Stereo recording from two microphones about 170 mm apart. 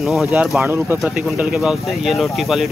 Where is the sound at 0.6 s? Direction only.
15° right (ahead or behind).